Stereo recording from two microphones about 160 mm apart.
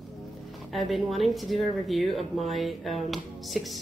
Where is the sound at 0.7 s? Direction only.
Centre (ahead or behind).